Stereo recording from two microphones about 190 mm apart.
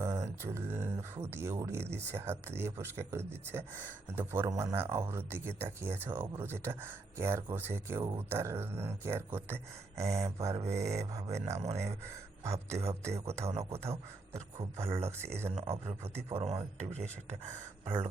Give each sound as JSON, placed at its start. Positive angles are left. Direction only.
{"t": 0.0, "sound": "speech", "side_deg": -15}
{"t": 13.9, "sound": "a man's voice", "side_deg": -30}
{"t": 14.8, "sound": "speech", "side_deg": -15}
{"t": 16.6, "sound": "a man's voice", "side_deg": -30}
{"t": 17.8, "sound": "speech", "side_deg": -10}